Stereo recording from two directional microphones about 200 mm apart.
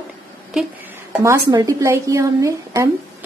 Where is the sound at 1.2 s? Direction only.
15° right (ahead or behind).